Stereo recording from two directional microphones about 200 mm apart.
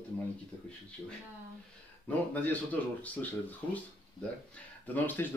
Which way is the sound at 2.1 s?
10° left (ahead or behind).